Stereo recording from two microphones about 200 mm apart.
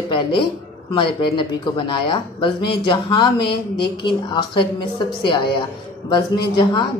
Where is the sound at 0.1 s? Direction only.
25° left (ahead or behind).